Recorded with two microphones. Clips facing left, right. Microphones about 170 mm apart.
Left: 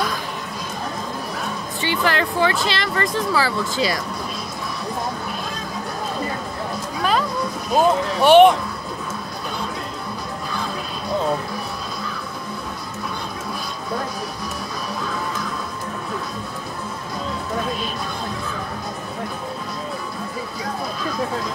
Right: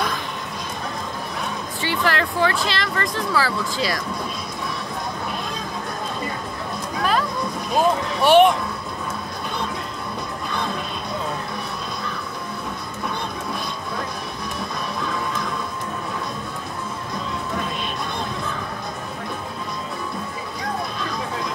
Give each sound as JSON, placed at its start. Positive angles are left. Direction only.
{"t": 1.8, "sound": "speech", "side_deg": 0}
{"t": 7.7, "sound": "speech", "side_deg": 0}